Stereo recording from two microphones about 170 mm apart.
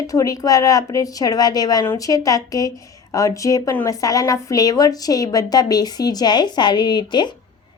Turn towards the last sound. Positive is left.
turn(degrees=25)  # may be behind; listen again after turning